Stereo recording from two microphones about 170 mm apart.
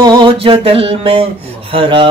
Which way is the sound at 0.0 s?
25° right (ahead or behind).